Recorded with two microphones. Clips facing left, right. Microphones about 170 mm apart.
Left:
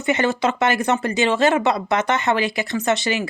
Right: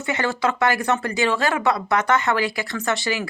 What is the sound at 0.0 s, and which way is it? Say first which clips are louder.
Speech: left 3 dB; 20° left (ahead or behind).